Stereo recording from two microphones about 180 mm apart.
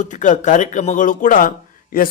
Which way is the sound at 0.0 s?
45° left (ahead or behind).